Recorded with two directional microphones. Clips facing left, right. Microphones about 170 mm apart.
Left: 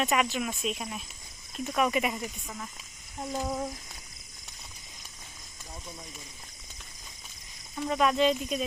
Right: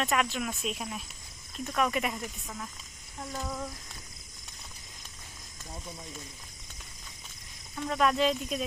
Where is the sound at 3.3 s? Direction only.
25° left (ahead or behind).